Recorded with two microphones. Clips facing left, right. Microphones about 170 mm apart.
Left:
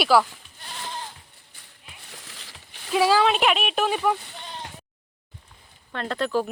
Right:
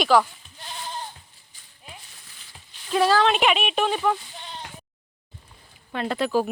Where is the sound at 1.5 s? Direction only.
65° left (ahead or behind).